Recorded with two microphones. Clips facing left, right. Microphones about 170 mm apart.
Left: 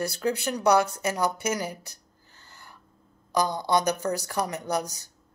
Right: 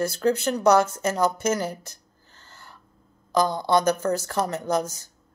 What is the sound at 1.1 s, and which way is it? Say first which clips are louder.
Speech: right 4 dB; 15° left (ahead or behind).